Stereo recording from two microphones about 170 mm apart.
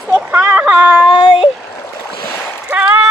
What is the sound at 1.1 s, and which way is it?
Speech, 30° left (ahead or behind).